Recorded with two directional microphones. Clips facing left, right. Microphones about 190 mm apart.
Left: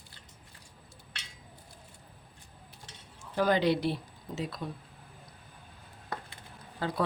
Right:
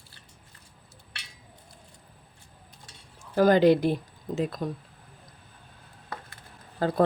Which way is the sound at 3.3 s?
45° right (ahead or behind).